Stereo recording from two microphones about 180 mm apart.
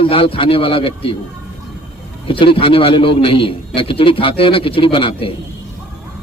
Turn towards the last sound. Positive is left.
turn(degrees=30)  # may be behind; listen again after turning